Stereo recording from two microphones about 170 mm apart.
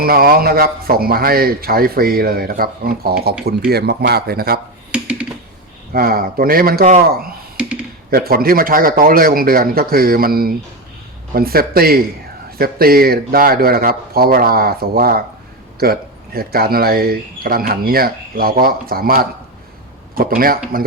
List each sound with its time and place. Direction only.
0.0 s speech: 60° right (ahead or behind)
4.9 s a sound: 5° right (ahead or behind)
5.9 s speech: 60° right (ahead or behind)
8.1 s speech: 60° right (ahead or behind)